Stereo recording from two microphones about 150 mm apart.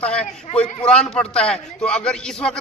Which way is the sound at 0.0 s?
5° left (ahead or behind).